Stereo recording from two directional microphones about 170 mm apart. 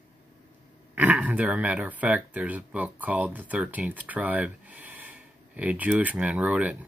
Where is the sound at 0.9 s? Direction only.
10° right (ahead or behind).